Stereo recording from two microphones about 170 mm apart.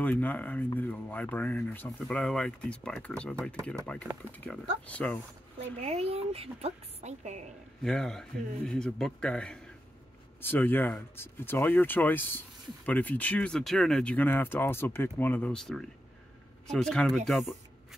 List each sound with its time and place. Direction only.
0.0 s speech: 10° left (ahead or behind)
5.8 s a woman's voice: 40° right (ahead or behind)
7.8 s speech: 5° left (ahead or behind)